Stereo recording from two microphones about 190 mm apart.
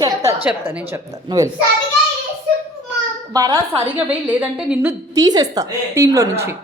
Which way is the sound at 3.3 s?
20° right (ahead or behind).